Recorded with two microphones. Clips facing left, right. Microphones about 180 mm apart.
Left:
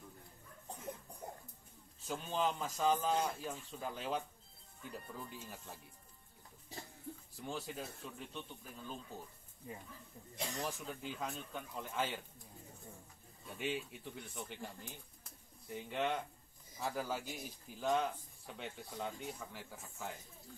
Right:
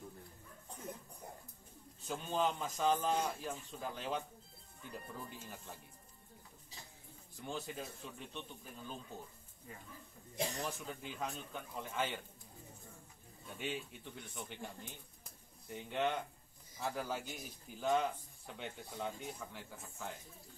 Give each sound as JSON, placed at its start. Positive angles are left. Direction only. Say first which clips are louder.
{"t": 2.0, "sound": "a man's voice", "louder": "right 1 dB", "side_deg": 0}
{"t": 7.3, "sound": "a man's voice", "louder": "right 1 dB", "side_deg": 0}
{"t": 10.6, "sound": "a man's voice", "louder": "left 1 dB", "side_deg": 0}
{"t": 13.5, "sound": "a man's voice", "louder": "left 2 dB", "side_deg": 0}